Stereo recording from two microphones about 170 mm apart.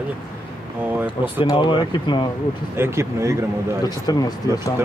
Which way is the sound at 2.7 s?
15° right (ahead or behind).